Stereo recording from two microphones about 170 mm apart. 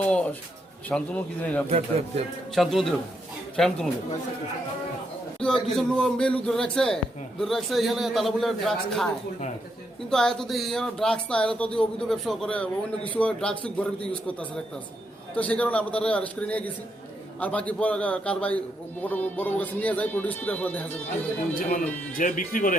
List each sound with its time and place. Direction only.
0.0 s speech: 5° left (ahead or behind)
5.4 s speech: 5° left (ahead or behind)
10.1 s speech: 5° left (ahead or behind)
22.2 s speech: 50° left (ahead or behind)